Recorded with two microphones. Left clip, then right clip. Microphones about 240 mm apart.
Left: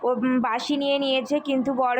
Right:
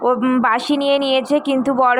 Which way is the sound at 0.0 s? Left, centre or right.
Centre.